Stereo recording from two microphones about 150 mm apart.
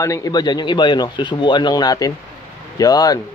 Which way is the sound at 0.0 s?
25° left (ahead or behind).